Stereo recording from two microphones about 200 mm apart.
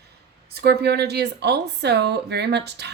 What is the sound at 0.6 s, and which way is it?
Speech, 55° right (ahead or behind).